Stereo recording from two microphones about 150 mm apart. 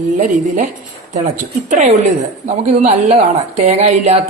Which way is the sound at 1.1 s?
55° right (ahead or behind).